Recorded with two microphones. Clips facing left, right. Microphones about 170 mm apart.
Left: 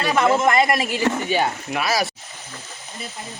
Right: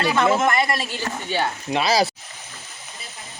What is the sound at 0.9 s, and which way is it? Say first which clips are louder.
Speech: left 8 dB; 90° left.